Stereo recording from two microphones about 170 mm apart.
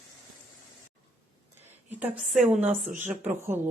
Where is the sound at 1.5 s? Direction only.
10° right (ahead or behind).